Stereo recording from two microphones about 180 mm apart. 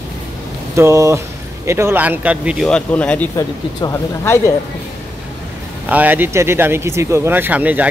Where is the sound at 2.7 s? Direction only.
5° left (ahead or behind).